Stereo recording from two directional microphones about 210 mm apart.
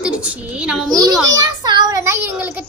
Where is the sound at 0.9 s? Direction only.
15° right (ahead or behind).